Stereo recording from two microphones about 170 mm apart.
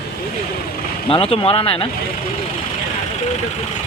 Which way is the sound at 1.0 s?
35° left (ahead or behind).